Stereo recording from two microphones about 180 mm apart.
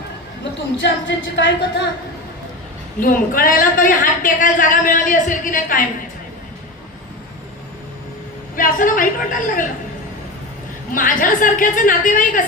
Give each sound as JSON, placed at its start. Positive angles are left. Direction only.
{"t": 0.8, "sound": "speech", "side_deg": 85}
{"t": 3.0, "sound": "a woman's voice", "side_deg": 50}
{"t": 8.5, "sound": "a woman's voice", "side_deg": 50}
{"t": 10.9, "sound": "a woman's voice", "side_deg": 50}